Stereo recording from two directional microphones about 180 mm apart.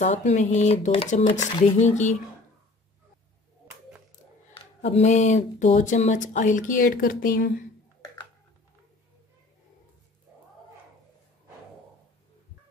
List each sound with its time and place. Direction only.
0.0 s speech: 40° left (ahead or behind)
4.8 s speech: 40° left (ahead or behind); by 7.6 s 55° left (ahead or behind)